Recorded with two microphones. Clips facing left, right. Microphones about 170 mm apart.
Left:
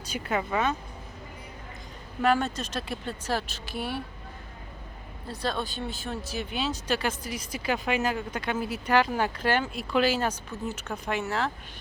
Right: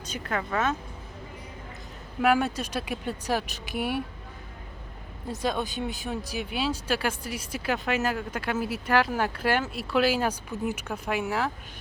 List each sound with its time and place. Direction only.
0.1 s speech: 10° left (ahead or behind)
2.2 s speech: 10° right (ahead or behind)
5.3 s speech: 15° right (ahead or behind)